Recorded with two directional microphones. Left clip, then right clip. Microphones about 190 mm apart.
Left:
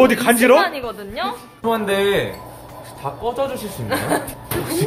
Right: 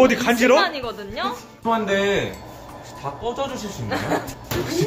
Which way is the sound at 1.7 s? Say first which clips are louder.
Left 2 dB; 45° left (ahead or behind).